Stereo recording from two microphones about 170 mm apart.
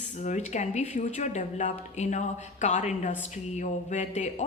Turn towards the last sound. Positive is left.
turn(degrees=40)  # may be behind; listen again after turning